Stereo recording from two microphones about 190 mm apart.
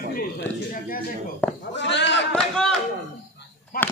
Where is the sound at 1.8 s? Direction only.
65° left (ahead or behind).